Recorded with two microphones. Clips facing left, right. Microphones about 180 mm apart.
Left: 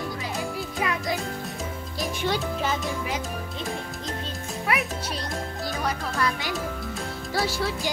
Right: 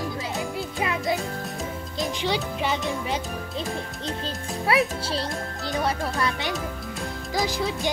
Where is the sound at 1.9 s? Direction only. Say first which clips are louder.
Right 1 dB; 15° right (ahead or behind).